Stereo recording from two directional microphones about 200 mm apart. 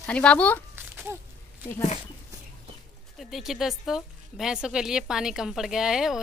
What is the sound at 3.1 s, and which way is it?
Speech, centre (ahead or behind).